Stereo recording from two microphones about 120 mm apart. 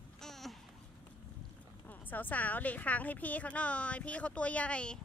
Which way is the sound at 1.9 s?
15° left (ahead or behind).